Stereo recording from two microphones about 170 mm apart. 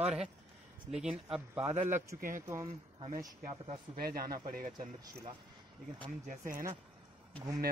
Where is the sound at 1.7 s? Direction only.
45° right (ahead or behind).